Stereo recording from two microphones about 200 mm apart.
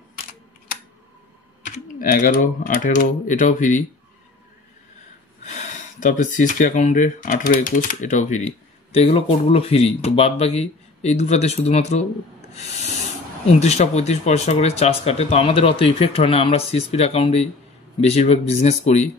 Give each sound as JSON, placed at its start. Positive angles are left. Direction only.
{"t": 2.0, "sound": "speech", "side_deg": 45}
{"t": 5.4, "sound": "speech", "side_deg": 35}